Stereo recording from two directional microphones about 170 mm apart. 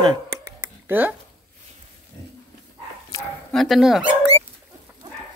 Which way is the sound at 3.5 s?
Centre (ahead or behind).